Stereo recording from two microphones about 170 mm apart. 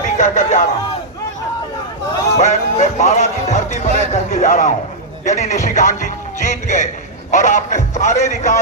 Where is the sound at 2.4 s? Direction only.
45° left (ahead or behind).